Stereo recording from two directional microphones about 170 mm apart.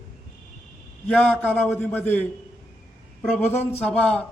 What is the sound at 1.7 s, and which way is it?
Speech, 10° left (ahead or behind).